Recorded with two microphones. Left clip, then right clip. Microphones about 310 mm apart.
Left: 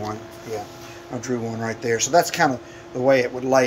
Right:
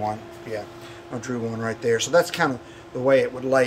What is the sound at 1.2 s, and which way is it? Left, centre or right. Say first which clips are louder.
Speech: left 1 dB; centre.